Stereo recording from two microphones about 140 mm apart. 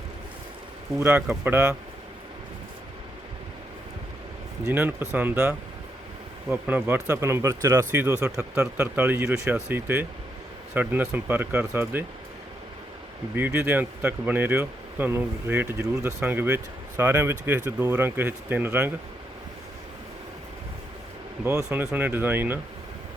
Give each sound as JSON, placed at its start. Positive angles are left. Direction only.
{"t": 0.9, "sound": "speech", "side_deg": -15}
{"t": 4.6, "sound": "speech", "side_deg": -15}
{"t": 13.3, "sound": "speech", "side_deg": -15}
{"t": 21.7, "sound": "speech", "side_deg": -10}